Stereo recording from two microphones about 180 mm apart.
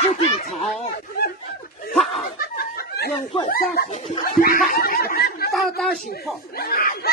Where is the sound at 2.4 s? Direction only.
55° left (ahead or behind).